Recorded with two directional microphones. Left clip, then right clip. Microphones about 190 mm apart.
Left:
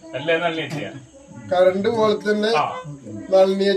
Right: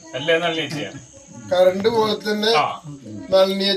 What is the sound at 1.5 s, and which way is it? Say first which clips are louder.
Speech: right 1 dB; 15° right (ahead or behind).